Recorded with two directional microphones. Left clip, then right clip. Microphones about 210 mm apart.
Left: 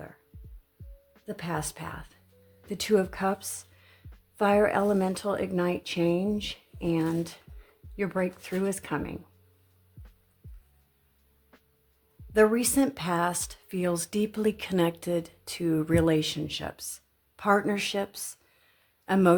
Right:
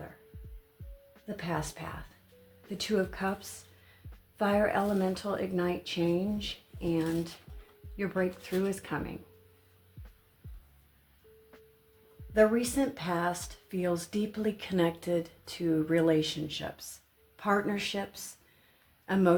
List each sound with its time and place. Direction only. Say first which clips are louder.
1.4 s speech: left 1 dB; 45° left (ahead or behind)
11.5 s music: right 2 dB; centre (ahead or behind)
12.3 s speech: left 3 dB; 50° left (ahead or behind)